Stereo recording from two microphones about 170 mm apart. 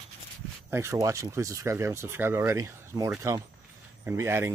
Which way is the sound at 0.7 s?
15° right (ahead or behind).